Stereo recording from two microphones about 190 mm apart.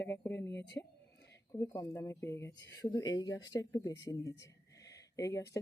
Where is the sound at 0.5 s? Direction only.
65° left (ahead or behind).